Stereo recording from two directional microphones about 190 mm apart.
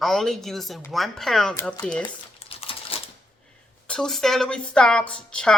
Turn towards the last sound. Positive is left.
turn(degrees=5)  # may be behind; listen again after turning